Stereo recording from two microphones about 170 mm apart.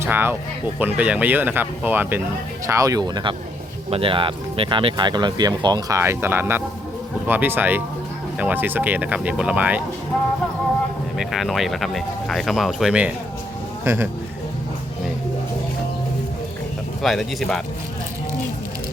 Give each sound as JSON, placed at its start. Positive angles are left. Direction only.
{"t": 0.0, "sound": "speech", "side_deg": -10}
{"t": 11.2, "sound": "speech", "side_deg": 0}
{"t": 17.0, "sound": "speech", "side_deg": 0}